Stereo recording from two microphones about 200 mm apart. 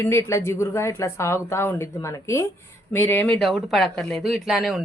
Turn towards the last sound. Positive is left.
turn(degrees=0)  # may be behind; listen again after turning